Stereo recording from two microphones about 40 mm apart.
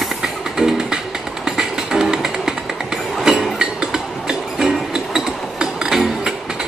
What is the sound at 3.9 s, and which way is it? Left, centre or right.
Music, centre.